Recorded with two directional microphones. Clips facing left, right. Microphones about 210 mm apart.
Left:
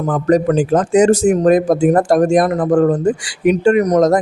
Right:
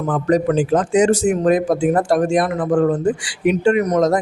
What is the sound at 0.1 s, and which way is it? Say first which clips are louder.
A man's voice: left 3 dB; 45° left (ahead or behind).